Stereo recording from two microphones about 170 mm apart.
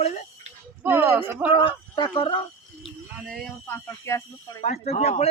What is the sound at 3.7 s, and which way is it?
Speech, 15° left (ahead or behind).